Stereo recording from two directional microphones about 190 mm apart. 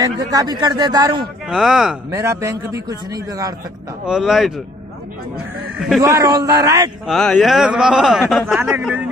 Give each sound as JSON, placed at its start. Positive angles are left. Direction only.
{"t": 0.0, "sound": "a man's voice", "side_deg": -20}
{"t": 1.5, "sound": "speech", "side_deg": 0}
{"t": 2.1, "sound": "a man's voice", "side_deg": -15}
{"t": 4.0, "sound": "speech", "side_deg": -5}
{"t": 5.9, "sound": "a man's voice", "side_deg": -15}
{"t": 7.1, "sound": "speech", "side_deg": 5}
{"t": 8.5, "sound": "a man's voice", "side_deg": -10}